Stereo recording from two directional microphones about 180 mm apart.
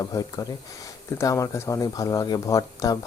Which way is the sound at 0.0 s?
20° left (ahead or behind).